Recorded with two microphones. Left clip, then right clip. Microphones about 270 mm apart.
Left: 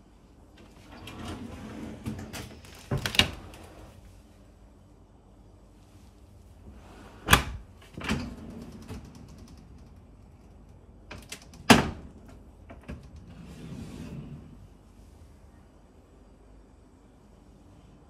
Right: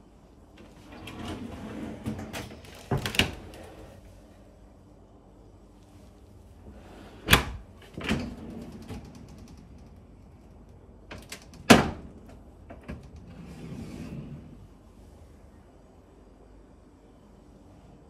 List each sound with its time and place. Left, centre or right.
0.6 s sliding door: centre
7.2 s a sound: centre
11.1 s door: centre
12.6 s mechanisms: centre